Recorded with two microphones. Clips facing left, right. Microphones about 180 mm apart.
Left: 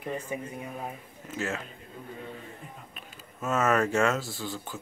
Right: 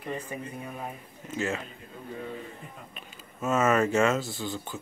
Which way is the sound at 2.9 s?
Centre (ahead or behind).